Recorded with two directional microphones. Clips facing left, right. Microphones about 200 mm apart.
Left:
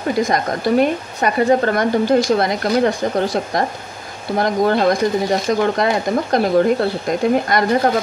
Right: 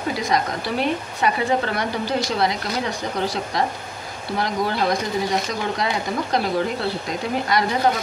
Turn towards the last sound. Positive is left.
turn(degrees=50)  # may be behind; listen again after turning